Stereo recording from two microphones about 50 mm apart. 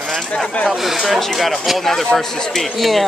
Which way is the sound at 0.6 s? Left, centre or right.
Centre.